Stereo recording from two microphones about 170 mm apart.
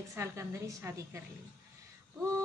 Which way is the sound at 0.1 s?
15° right (ahead or behind).